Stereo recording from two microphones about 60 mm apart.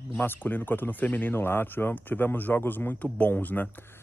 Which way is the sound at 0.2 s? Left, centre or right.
Left.